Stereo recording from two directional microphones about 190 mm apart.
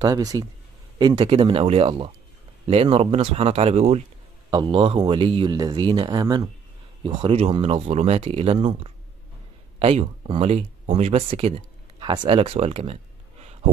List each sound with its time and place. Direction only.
0.0 s a man's voice: 20° right (ahead or behind)